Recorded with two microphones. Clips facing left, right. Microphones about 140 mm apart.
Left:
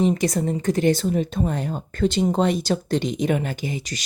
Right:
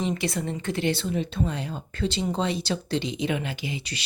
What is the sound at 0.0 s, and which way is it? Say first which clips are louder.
A woman's voice: left 7 dB; 40° left (ahead or behind).